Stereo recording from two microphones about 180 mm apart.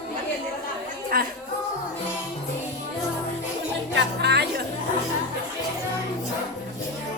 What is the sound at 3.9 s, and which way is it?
Music, 65° right (ahead or behind).